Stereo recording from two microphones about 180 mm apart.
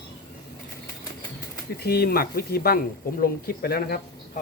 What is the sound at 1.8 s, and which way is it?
Speech, 60° left (ahead or behind).